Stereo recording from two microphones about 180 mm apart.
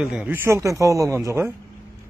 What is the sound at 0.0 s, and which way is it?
Speech, 5° right (ahead or behind).